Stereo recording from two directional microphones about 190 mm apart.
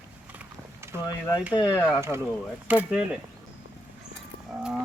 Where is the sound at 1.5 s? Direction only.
20° left (ahead or behind).